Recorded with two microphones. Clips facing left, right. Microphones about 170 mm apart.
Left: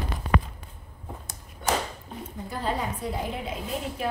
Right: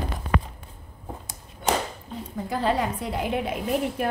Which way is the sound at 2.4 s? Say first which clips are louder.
Right 5 dB; 80° right.